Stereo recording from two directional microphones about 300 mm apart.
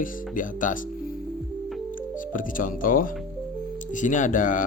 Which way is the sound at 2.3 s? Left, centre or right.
Left.